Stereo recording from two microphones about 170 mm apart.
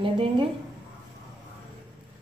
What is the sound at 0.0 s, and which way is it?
Speech, 30° right (ahead or behind).